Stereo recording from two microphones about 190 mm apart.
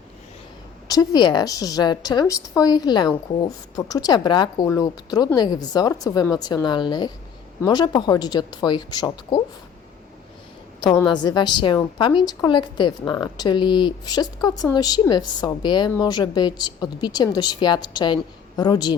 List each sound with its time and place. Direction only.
0.9 s speech: 20° left (ahead or behind)
11.0 s speech: 25° left (ahead or behind)